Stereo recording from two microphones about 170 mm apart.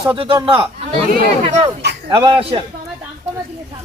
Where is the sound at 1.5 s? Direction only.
40° right (ahead or behind).